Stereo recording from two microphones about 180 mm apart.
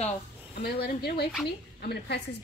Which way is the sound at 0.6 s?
60° left (ahead or behind).